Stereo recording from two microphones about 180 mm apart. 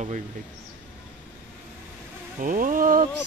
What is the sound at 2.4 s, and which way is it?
Speech, 50° right (ahead or behind).